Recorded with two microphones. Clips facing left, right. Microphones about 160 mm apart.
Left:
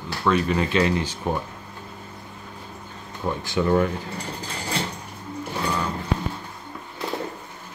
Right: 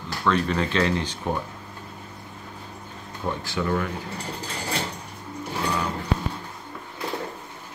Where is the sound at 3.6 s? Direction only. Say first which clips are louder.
Left 5 dB; 20° left (ahead or behind).